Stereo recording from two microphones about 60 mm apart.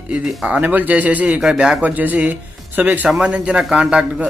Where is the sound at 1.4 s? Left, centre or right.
Centre.